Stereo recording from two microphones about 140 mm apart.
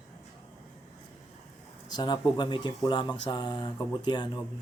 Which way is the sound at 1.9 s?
30° left (ahead or behind).